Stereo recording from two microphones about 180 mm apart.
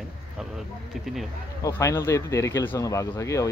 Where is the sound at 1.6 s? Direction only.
15° left (ahead or behind).